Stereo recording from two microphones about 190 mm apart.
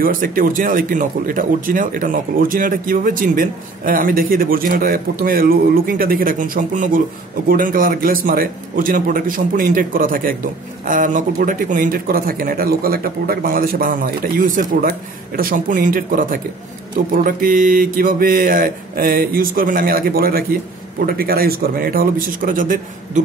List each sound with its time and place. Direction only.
0.0 s speech: 50° right (ahead or behind)